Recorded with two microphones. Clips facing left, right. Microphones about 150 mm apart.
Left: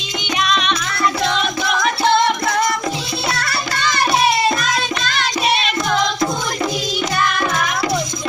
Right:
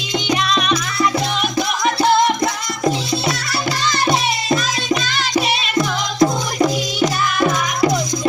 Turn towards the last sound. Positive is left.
turn(degrees=-25)  # may be behind; listen again after turning